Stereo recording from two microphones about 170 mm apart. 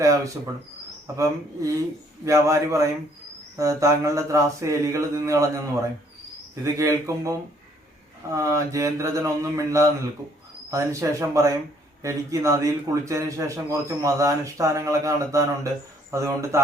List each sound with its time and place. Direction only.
0.0 s a man's voice: 20° right (ahead or behind)
6.7 s a man's voice: 15° right (ahead or behind)